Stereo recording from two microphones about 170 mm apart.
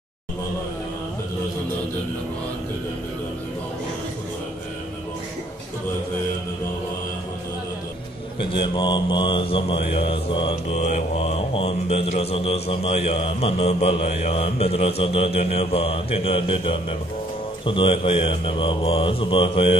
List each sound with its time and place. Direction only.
8.4 s speech: 30° left (ahead or behind)